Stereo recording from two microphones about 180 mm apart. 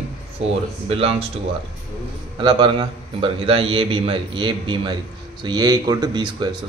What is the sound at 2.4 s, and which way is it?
Speech, 25° right (ahead or behind).